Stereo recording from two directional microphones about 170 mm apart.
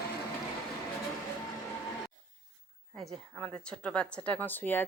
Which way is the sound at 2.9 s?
5° left (ahead or behind).